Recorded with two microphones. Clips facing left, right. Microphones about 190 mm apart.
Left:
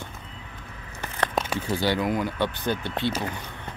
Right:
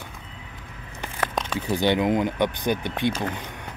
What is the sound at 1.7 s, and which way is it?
Speech, 20° right (ahead or behind).